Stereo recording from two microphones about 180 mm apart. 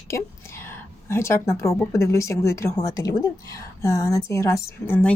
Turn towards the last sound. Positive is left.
turn(degrees=10)  # may be behind; listen again after turning